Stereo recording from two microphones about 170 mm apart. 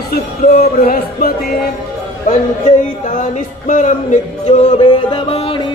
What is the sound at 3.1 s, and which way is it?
Music, 50° left (ahead or behind).